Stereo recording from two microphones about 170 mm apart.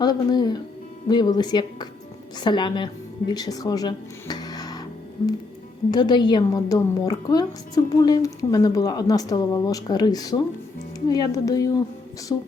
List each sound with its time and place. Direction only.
0.0 s a woman's voice: 25° left (ahead or behind)
5.9 s a woman's voice: 25° left (ahead or behind)